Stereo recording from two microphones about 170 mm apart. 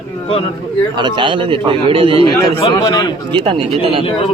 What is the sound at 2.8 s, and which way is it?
Speech, 20° left (ahead or behind).